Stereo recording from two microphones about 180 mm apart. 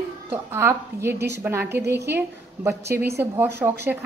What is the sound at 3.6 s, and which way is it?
Speech, 5° right (ahead or behind).